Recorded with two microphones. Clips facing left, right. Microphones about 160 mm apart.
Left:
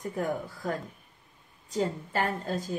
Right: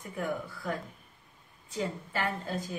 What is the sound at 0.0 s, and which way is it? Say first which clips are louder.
A woman's voice: left 3 dB; 40° left (ahead or behind).